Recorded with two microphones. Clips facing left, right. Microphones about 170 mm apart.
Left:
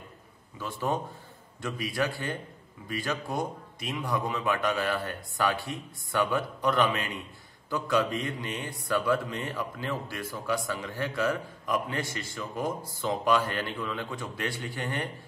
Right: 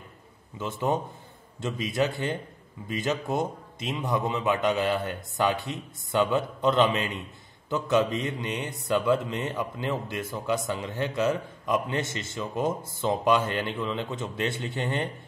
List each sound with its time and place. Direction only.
0.6 s a man's voice: 20° right (ahead or behind)